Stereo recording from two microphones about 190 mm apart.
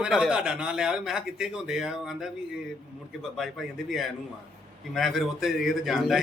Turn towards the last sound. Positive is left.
turn(degrees=0)  # may be behind; listen again after turning